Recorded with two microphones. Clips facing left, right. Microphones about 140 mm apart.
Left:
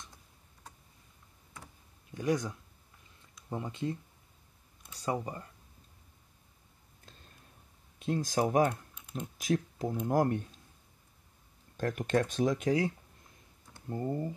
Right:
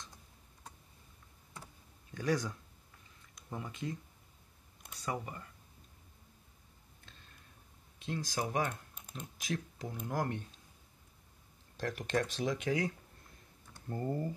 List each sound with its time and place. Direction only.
2.1 s speech: 20° left (ahead or behind)
8.0 s speech: 40° left (ahead or behind)
11.7 s speech: 45° left (ahead or behind)
13.7 s speech: 15° left (ahead or behind)